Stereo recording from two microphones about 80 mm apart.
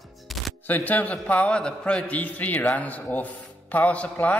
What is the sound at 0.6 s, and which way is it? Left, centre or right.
A man's voice, left.